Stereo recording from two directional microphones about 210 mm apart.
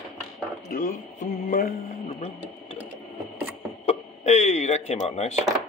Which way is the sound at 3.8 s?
30° left (ahead or behind).